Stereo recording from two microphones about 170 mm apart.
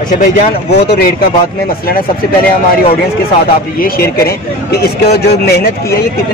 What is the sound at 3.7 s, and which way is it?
Speech, 60° left (ahead or behind).